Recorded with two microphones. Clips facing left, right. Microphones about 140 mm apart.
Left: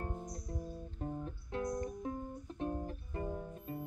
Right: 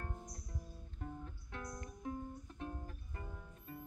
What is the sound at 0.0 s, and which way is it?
Music, 30° left (ahead or behind).